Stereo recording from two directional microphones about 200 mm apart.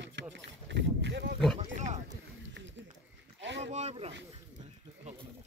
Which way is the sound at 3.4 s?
65° right (ahead or behind).